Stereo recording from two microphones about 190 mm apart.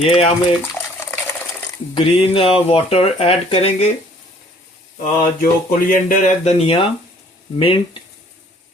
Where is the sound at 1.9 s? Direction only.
30° left (ahead or behind).